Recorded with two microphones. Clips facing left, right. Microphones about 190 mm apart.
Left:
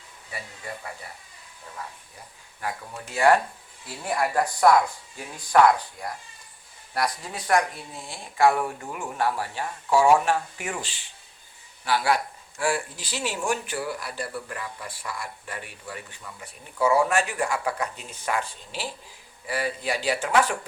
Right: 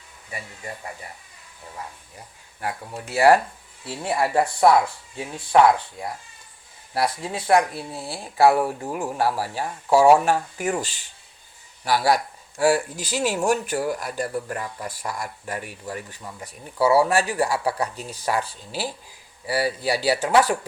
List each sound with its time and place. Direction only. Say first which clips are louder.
3.8 s speech: right 3 dB; 30° right (ahead or behind)